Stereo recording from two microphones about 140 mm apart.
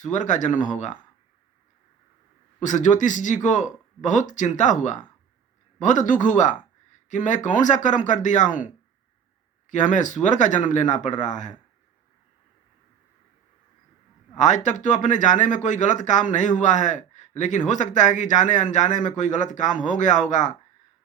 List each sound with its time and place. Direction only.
0.0 s speech: 60° left (ahead or behind)
2.6 s speech: 60° left (ahead or behind)
14.3 s speech: 60° left (ahead or behind)